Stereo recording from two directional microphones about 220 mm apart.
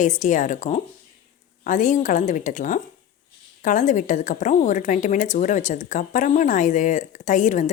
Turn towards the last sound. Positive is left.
turn(degrees=35)  # may be behind; listen again after turning